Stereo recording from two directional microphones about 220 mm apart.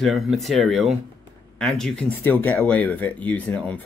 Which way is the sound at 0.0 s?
Centre (ahead or behind).